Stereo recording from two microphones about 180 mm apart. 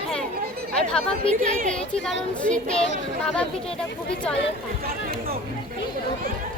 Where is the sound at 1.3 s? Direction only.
40° right (ahead or behind).